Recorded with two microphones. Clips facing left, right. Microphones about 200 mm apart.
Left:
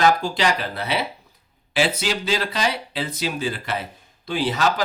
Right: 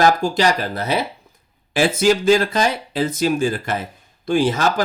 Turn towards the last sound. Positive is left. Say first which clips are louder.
# right 4 dB
turn(degrees=-45)  # may be behind; listen again after turning